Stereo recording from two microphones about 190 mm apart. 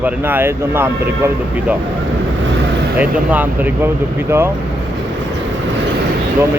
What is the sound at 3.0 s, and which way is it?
Speech, 10° right (ahead or behind).